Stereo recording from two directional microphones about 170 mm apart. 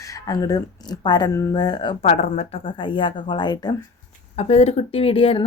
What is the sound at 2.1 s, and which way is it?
A woman's voice, 40° left (ahead or behind).